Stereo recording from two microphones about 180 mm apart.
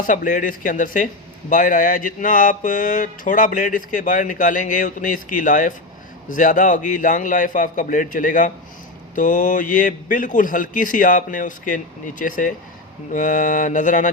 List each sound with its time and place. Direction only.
0.0 s mantra: 45° left (ahead or behind)